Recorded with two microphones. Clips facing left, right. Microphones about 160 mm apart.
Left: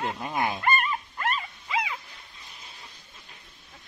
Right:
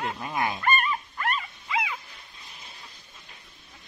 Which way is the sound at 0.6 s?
30° left (ahead or behind).